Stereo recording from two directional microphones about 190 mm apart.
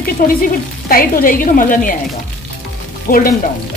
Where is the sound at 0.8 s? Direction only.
50° left (ahead or behind).